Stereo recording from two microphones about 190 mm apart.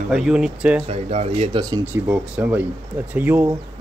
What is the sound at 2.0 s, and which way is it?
Speech, 5° right (ahead or behind).